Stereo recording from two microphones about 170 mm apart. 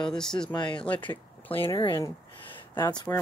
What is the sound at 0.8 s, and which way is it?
Speech, 10° left (ahead or behind).